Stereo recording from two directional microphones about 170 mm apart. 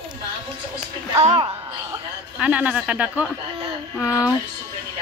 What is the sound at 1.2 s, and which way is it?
Speech, 35° right (ahead or behind).